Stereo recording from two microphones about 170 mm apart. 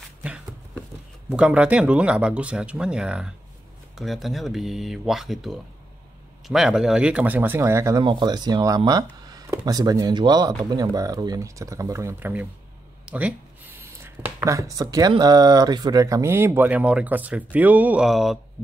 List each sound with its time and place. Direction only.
0.2 s a sound: 5° right (ahead or behind)
1.3 s speech: 5° right (ahead or behind)
8.0 s speech: 25° right (ahead or behind); by 18.4 s centre (ahead or behind)